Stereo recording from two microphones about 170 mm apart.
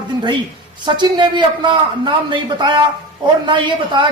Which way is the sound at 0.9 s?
25° right (ahead or behind).